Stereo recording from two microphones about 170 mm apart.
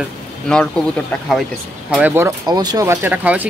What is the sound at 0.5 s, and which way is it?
Speech, 5° left (ahead or behind).